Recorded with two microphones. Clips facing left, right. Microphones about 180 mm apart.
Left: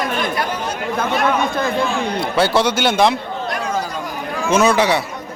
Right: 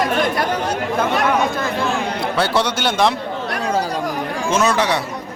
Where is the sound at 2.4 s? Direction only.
Centre (ahead or behind).